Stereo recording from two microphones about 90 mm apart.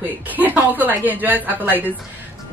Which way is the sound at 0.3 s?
20° right (ahead or behind).